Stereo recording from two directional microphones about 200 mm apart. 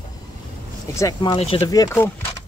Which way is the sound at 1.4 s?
30° left (ahead or behind).